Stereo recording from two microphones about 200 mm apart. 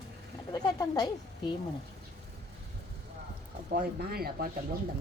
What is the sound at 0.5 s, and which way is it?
Speech, 20° left (ahead or behind).